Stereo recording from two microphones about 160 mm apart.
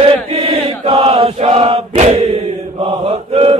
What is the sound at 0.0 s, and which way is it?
Chant, 35° right (ahead or behind).